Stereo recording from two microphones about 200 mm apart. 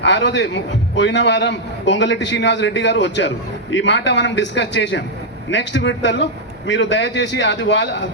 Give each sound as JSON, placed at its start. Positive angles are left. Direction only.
{"t": 0.0, "sound": "a man's voice", "side_deg": 60}